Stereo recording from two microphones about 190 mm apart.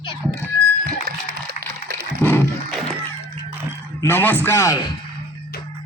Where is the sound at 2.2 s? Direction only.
10° left (ahead or behind).